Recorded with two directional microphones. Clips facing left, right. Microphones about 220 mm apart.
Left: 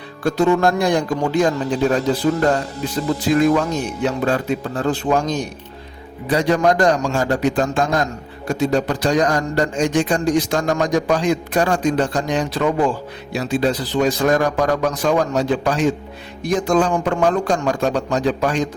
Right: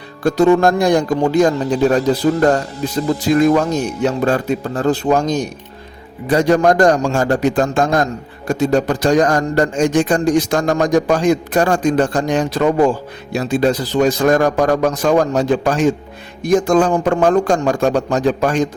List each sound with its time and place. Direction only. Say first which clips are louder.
0.2 s speech: right 4 dB; 40° right (ahead or behind)
3.4 s speech: right 3 dB; 45° right (ahead or behind)